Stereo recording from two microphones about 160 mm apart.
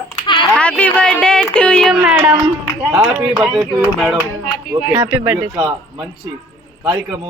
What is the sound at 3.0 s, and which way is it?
Speech, 10° right (ahead or behind).